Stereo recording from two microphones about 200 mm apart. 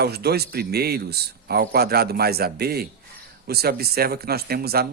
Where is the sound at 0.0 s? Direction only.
55° right (ahead or behind).